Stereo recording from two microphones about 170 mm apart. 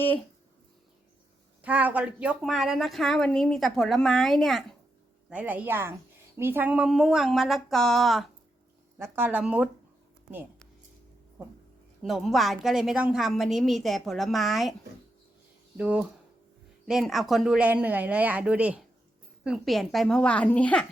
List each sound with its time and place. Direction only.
1.6 s a woman's voice: 10° right (ahead or behind)
9.0 s speech: 15° right (ahead or behind)
12.0 s a woman's voice: centre (ahead or behind)
15.8 s a woman's voice: 10° right (ahead or behind); by 20.8 s 10° left (ahead or behind)